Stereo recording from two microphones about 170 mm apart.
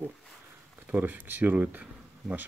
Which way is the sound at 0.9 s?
10° right (ahead or behind).